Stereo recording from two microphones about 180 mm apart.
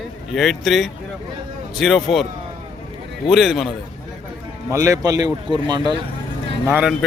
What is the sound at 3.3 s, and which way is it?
Speech, centre (ahead or behind).